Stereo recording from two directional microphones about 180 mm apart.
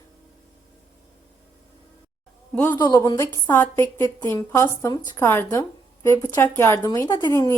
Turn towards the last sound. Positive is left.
turn(degrees=20)  # may be behind; listen again after turning